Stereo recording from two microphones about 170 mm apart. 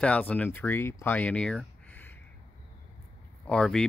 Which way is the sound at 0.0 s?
5° left (ahead or behind).